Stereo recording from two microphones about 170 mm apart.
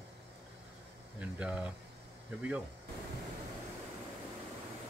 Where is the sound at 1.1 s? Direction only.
5° right (ahead or behind).